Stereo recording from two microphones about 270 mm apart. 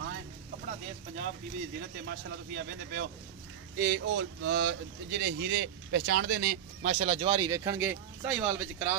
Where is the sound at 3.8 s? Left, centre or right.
Right.